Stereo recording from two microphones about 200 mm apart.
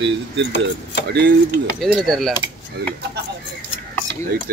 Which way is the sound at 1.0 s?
55° right (ahead or behind).